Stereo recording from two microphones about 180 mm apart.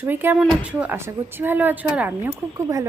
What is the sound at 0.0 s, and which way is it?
A woman's voice, 10° right (ahead or behind).